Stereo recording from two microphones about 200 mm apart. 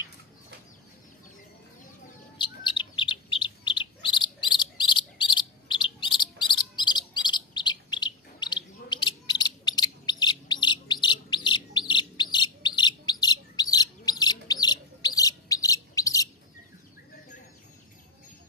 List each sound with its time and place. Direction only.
2.3 s bird: 25° left (ahead or behind)